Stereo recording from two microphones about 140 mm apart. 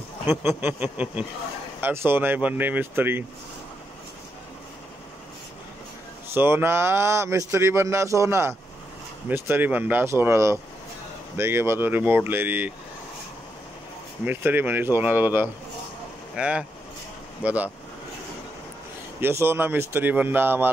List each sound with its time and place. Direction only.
0.3 s a man's voice: 15° right (ahead or behind)
6.3 s a man's voice: 15° right (ahead or behind)
14.2 s a man's voice: 15° right (ahead or behind)
19.2 s a man's voice: 15° right (ahead or behind)